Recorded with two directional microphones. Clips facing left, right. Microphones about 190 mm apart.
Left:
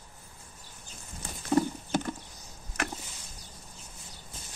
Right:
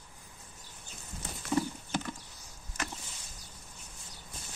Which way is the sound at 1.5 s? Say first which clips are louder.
Left 5 dB; 45° left (ahead or behind).